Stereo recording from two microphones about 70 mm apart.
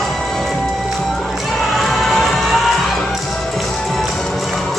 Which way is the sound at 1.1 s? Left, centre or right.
Centre.